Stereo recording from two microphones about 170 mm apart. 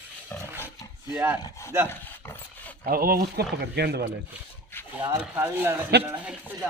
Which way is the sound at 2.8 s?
60° right (ahead or behind).